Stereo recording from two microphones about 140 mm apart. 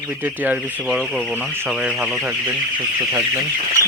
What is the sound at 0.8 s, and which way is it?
Speech, centre (ahead or behind).